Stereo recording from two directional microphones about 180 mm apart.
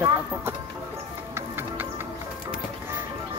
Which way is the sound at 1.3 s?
10° right (ahead or behind).